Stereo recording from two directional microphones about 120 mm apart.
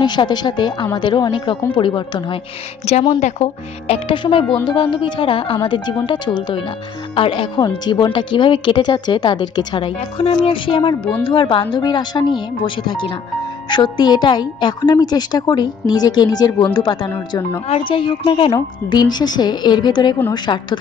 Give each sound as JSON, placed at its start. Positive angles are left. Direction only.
{"t": 0.0, "sound": "a woman's voice", "side_deg": 40}
{"t": 3.2, "sound": "a woman's voice", "side_deg": 65}
{"t": 17.6, "sound": "a woman's voice", "side_deg": 50}
{"t": 18.9, "sound": "speech", "side_deg": 35}